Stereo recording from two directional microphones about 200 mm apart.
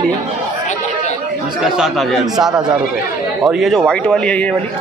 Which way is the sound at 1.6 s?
Centre (ahead or behind).